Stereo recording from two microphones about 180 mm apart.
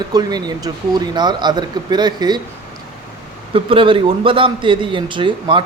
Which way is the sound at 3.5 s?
30° right (ahead or behind).